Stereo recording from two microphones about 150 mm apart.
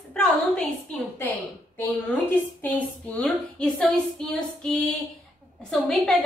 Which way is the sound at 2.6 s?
10° left (ahead or behind).